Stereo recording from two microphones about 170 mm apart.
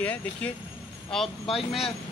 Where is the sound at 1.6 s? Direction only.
35° left (ahead or behind).